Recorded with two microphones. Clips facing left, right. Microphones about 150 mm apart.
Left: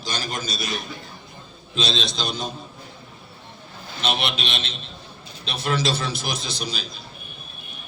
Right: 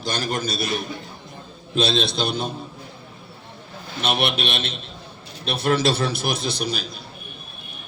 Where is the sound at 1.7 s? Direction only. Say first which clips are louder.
Right 5 dB; 60° right (ahead or behind).